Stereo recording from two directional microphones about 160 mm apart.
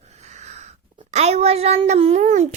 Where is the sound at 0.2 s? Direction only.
45° right (ahead or behind).